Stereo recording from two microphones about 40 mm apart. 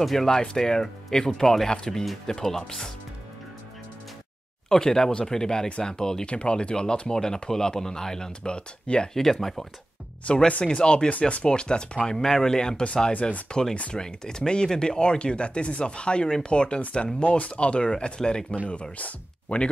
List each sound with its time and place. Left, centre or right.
0.0 s speech: centre
4.6 s speech: centre
9.1 s speech: centre
10.2 s speech: left
11.1 s speech: left
11.4 s speech: left
12.2 s speech: centre
12.8 s speech: left
18.7 s speech: left